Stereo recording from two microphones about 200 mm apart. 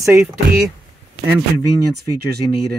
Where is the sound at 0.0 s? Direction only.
5° right (ahead or behind).